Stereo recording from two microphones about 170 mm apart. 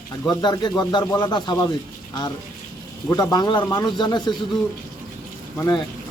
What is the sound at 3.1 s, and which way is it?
Speech, 20° left (ahead or behind).